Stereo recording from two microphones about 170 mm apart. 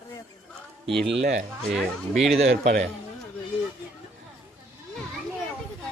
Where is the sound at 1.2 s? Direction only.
45° right (ahead or behind).